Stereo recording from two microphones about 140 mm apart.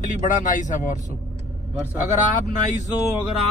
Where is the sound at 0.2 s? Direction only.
60° left (ahead or behind).